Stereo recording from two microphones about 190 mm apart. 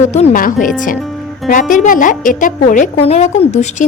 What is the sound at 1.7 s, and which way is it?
A woman's voice, 45° left (ahead or behind).